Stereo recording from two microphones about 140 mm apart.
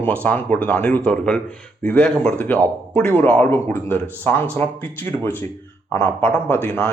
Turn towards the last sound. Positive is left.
turn(degrees=15)  # may be behind; listen again after turning